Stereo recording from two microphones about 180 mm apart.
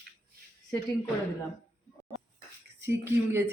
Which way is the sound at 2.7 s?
15° right (ahead or behind).